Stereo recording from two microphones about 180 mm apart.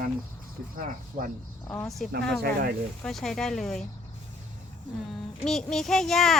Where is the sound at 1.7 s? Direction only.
20° left (ahead or behind).